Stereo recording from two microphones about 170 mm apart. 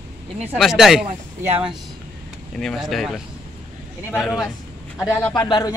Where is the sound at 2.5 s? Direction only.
Centre (ahead or behind).